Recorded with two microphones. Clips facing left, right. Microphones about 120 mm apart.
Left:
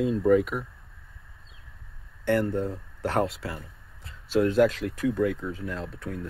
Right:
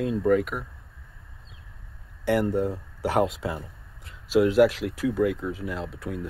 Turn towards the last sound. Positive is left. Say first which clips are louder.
# right 2 dB
turn(degrees=-10)  # may be behind; listen again after turning